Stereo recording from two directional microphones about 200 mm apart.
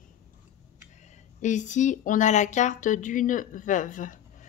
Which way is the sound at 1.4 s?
40° left (ahead or behind).